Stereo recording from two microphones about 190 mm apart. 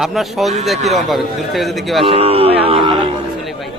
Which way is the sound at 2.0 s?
30° right (ahead or behind).